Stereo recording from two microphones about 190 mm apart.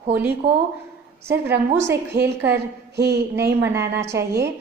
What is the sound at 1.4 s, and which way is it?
Speech, 10° right (ahead or behind).